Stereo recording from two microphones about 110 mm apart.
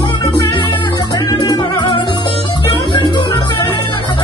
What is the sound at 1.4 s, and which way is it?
Music, 40° left (ahead or behind).